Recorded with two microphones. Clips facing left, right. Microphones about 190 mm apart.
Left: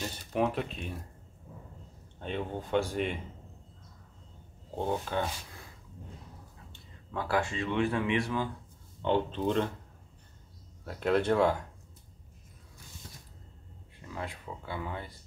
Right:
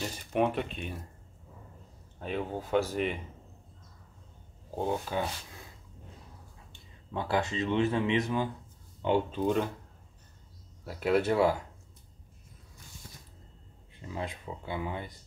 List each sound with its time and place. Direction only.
0.3 s speech: centre (ahead or behind)
2.1 s speech: 5° right (ahead or behind)
4.7 s speech: 5° right (ahead or behind)
6.7 s speech: 20° right (ahead or behind)
9.0 s speech: 10° right (ahead or behind)
10.9 s speech: 5° right (ahead or behind)
14.1 s speech: 20° right (ahead or behind)